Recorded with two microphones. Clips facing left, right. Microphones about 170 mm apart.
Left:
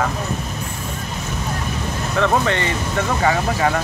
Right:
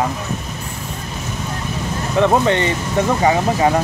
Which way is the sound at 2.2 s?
20° right (ahead or behind).